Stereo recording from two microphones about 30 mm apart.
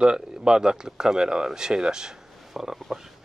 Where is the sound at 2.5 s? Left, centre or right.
Centre.